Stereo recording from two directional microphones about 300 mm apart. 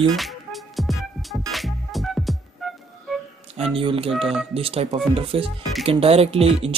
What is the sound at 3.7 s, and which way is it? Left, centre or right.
Speech, centre.